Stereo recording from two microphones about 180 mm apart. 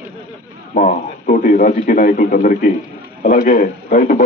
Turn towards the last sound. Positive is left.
turn(degrees=50)  # may be behind; listen again after turning